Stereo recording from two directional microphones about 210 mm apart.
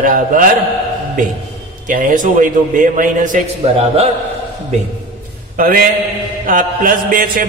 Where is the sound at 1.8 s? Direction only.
40° right (ahead or behind).